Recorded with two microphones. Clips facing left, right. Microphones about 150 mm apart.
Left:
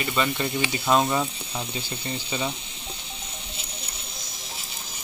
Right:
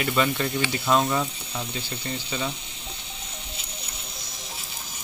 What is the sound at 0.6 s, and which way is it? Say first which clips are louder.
Speech: left 1 dB; 10° left (ahead or behind).